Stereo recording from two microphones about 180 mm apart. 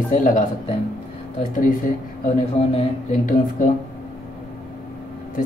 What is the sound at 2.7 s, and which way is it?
Speech, 45° left (ahead or behind).